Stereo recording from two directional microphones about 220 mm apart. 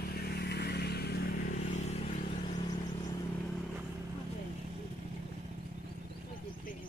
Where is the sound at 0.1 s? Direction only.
45° left (ahead or behind).